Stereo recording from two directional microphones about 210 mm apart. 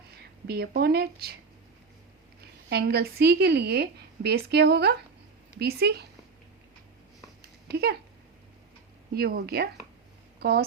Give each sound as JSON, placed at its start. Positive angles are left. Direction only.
{"t": 0.2, "sound": "speech", "side_deg": -50}
{"t": 2.6, "sound": "speech", "side_deg": -50}
{"t": 7.7, "sound": "speech", "side_deg": -50}
{"t": 9.1, "sound": "speech", "side_deg": -50}